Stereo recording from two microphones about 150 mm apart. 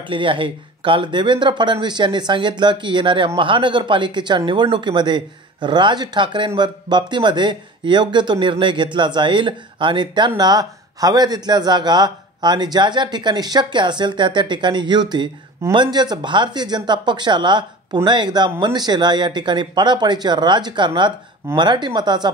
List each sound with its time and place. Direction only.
0.0 s speech: 35° right (ahead or behind)